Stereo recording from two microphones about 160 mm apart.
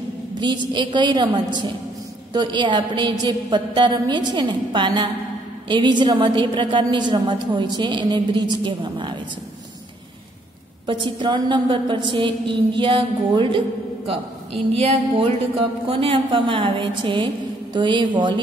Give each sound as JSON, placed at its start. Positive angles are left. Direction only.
{"t": 0.3, "sound": "a woman's voice", "side_deg": -30}
{"t": 10.9, "sound": "a woman's voice", "side_deg": -30}
{"t": 14.8, "sound": "a woman's voice", "side_deg": -35}